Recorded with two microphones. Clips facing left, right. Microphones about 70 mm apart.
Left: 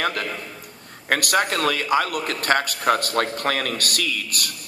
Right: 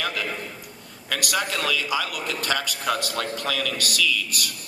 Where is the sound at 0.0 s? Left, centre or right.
Left.